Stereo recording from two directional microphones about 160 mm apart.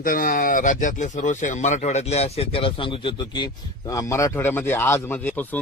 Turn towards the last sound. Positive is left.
turn(degrees=10)  # may be behind; listen again after turning